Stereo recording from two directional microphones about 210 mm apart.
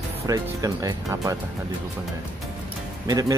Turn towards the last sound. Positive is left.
turn(degrees=-15)  # may be behind; listen again after turning